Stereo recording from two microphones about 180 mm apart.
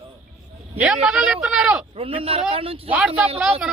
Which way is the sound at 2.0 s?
30° right (ahead or behind).